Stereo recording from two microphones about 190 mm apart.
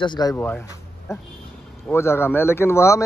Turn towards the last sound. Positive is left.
turn(degrees=15)  # may be behind; listen again after turning